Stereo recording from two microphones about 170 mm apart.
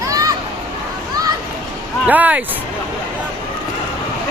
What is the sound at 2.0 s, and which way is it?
Speech, 10° right (ahead or behind).